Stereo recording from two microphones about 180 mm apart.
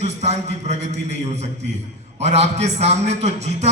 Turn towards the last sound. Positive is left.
turn(degrees=-35)  # may be behind; listen again after turning